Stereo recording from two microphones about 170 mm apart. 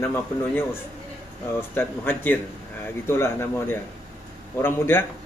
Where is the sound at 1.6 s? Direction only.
10° left (ahead or behind).